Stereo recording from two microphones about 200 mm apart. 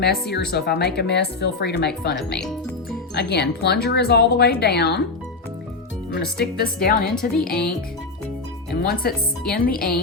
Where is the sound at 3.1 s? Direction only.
55° left (ahead or behind).